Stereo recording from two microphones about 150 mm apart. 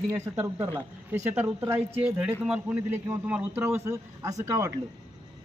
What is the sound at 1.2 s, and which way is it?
A man's voice, 15° right (ahead or behind).